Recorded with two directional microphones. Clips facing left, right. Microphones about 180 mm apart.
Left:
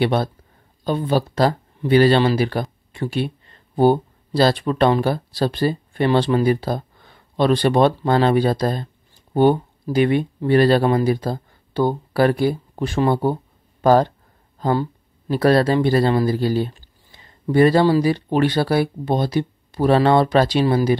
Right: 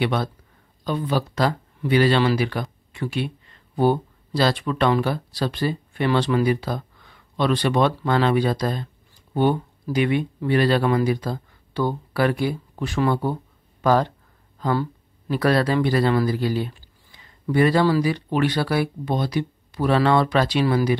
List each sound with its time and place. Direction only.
0.0 s speech: 35° left (ahead or behind)